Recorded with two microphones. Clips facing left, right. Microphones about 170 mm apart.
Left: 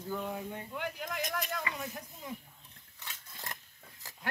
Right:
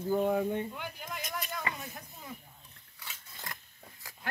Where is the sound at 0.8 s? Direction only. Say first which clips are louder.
Left 4 dB; 70° left (ahead or behind).